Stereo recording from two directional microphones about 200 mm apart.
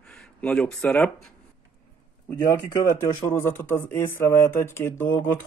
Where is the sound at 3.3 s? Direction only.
10° left (ahead or behind).